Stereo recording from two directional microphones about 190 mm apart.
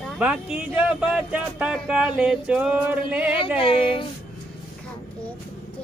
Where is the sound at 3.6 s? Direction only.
25° left (ahead or behind).